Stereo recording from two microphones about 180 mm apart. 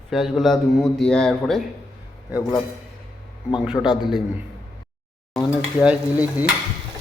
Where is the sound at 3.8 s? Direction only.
15° left (ahead or behind).